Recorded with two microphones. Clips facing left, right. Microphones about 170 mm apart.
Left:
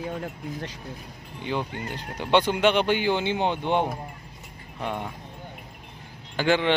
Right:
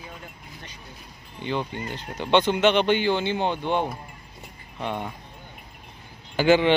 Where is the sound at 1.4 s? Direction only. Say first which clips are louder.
Right 1 dB; 10° left (ahead or behind).